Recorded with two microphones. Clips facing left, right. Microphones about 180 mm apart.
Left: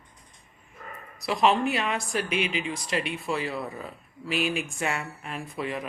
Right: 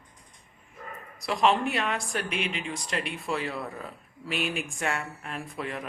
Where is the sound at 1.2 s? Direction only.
Centre (ahead or behind).